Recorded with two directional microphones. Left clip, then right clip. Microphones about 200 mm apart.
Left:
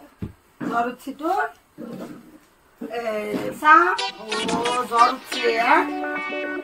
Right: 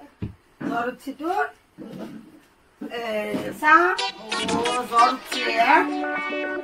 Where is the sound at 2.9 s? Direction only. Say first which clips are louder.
Left 1 dB; centre (ahead or behind).